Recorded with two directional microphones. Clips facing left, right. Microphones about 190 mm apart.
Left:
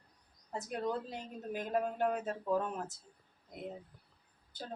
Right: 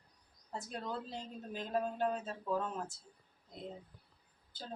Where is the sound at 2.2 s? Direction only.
15° left (ahead or behind).